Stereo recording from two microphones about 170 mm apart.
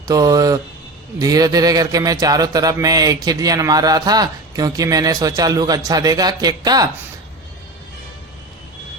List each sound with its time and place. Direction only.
0.1 s speech: 20° right (ahead or behind)